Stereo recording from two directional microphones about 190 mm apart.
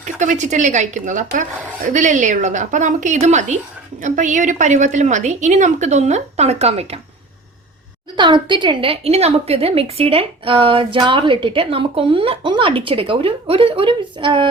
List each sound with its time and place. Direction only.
0.0 s a woman's voice: 40° right (ahead or behind)
8.1 s a woman's voice: 25° right (ahead or behind)